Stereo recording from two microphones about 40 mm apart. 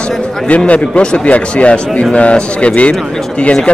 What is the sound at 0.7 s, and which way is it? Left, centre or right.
Speech, left.